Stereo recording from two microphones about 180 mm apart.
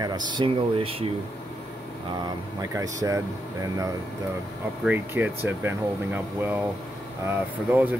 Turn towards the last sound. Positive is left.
turn(degrees=-10)  # may be behind; listen again after turning